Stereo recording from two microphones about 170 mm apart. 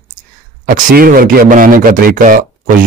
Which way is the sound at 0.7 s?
60° right (ahead or behind).